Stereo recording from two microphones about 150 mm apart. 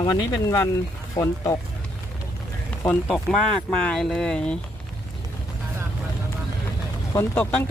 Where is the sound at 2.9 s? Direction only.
5° left (ahead or behind).